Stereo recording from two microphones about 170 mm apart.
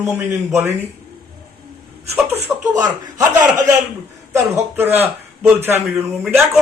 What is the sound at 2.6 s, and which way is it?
A man's voice, 20° right (ahead or behind).